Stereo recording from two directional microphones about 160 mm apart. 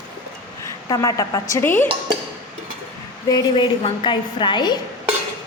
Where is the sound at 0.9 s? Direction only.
20° left (ahead or behind).